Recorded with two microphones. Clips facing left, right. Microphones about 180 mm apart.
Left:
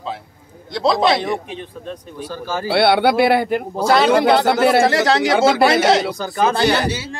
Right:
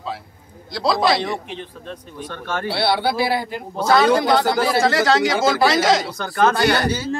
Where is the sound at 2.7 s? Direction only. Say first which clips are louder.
Left 7 dB; 60° left (ahead or behind).